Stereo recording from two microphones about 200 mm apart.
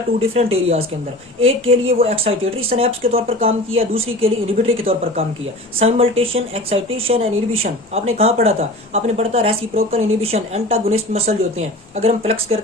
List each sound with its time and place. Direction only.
0.2 s speech: 30° right (ahead or behind)